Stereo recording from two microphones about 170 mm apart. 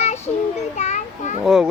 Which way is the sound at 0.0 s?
40° left (ahead or behind).